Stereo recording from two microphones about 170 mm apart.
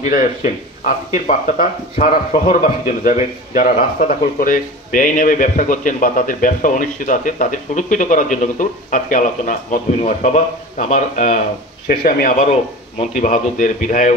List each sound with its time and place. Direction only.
0.1 s speech: 50° left (ahead or behind)
11.9 s speech: 60° left (ahead or behind)